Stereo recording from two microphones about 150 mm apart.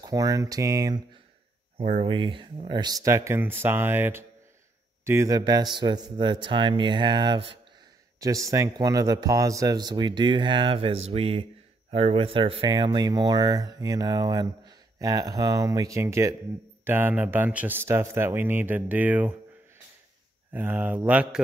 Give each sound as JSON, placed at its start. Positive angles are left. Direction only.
{"t": 0.0, "sound": "speech", "side_deg": -25}
{"t": 2.0, "sound": "speech", "side_deg": -35}
{"t": 20.5, "sound": "speech", "side_deg": -10}